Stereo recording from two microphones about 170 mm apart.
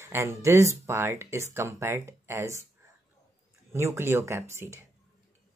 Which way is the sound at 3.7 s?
15° right (ahead or behind).